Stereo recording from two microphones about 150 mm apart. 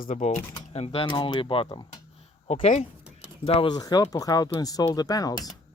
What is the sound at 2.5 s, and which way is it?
Speech, 45° left (ahead or behind).